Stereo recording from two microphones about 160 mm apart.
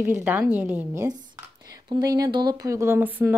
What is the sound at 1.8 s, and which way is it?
Speech, 25° right (ahead or behind).